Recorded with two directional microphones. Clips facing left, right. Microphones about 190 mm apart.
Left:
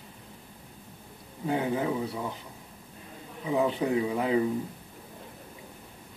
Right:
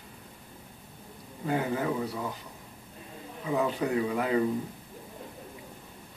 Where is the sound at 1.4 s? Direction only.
15° left (ahead or behind).